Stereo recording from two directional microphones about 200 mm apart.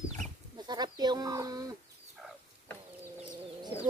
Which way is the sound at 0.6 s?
20° right (ahead or behind).